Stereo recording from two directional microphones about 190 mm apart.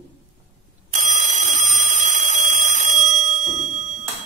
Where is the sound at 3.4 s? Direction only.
40° right (ahead or behind).